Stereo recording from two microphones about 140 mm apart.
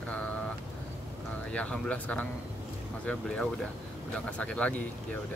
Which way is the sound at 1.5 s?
5° left (ahead or behind).